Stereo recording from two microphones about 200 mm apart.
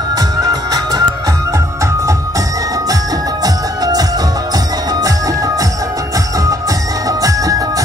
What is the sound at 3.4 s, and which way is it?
Music, 20° right (ahead or behind).